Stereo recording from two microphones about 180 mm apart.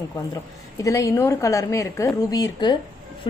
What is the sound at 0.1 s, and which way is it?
A woman's voice, 20° left (ahead or behind).